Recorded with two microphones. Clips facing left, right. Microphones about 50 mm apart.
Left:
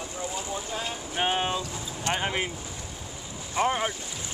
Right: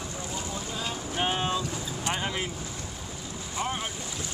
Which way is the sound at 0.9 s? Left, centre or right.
Centre.